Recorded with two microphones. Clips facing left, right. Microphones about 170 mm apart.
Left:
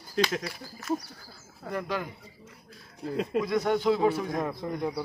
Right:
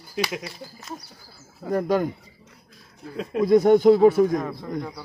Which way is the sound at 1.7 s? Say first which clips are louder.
Right 10 dB; 45° right (ahead or behind).